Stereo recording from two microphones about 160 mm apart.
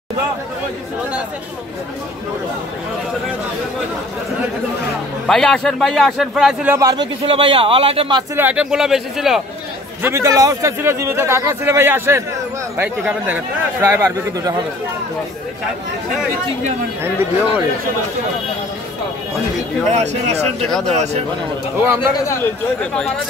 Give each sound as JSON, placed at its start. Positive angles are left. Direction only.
{"t": 5.2, "sound": "a man's voice", "side_deg": 5}
{"t": 6.7, "sound": "speech", "side_deg": -20}
{"t": 7.2, "sound": "speech", "side_deg": -35}
{"t": 8.4, "sound": "a man's voice", "side_deg": -10}
{"t": 10.0, "sound": "a man's voice", "side_deg": -20}
{"t": 13.3, "sound": "a man's voice", "side_deg": -15}
{"t": 17.0, "sound": "a man's voice", "side_deg": -15}
{"t": 19.9, "sound": "speech", "side_deg": -45}
{"t": 20.6, "sound": "a man's voice", "side_deg": 5}